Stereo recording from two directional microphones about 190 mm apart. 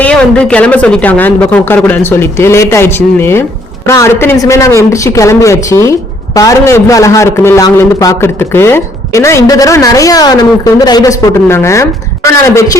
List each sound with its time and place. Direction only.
0.0 s a man's voice: 5° left (ahead or behind)